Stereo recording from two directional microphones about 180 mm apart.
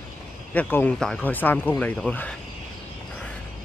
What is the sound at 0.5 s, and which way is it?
Speech, 10° left (ahead or behind).